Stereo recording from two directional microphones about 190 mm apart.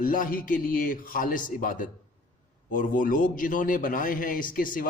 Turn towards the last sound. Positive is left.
turn(degrees=45)  # may be behind; listen again after turning